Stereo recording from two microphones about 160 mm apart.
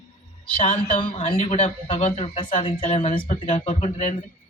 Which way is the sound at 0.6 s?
35° left (ahead or behind).